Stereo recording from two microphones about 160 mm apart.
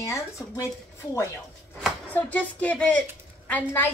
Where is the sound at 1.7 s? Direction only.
10° left (ahead or behind).